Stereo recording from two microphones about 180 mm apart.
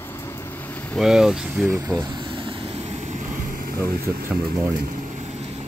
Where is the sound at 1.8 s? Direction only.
20° right (ahead or behind); by 4.2 s 55° right (ahead or behind).